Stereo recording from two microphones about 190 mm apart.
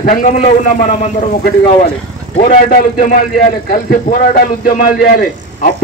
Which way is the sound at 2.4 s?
40° left (ahead or behind).